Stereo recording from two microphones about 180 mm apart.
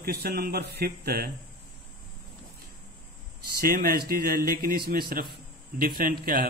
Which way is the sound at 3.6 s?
55° right (ahead or behind).